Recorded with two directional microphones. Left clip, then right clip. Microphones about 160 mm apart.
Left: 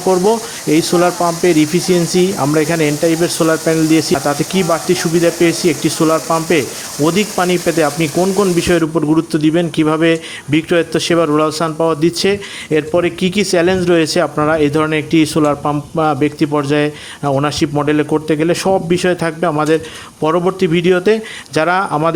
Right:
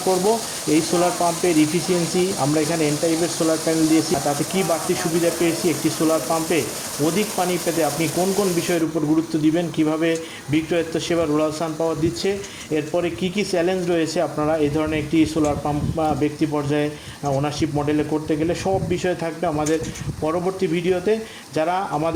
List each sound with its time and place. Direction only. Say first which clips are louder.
0.7 s speech: left 7 dB; 30° left (ahead or behind)